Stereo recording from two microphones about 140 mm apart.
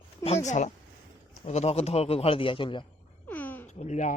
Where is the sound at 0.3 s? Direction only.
55° left (ahead or behind); by 2.8 s 35° left (ahead or behind).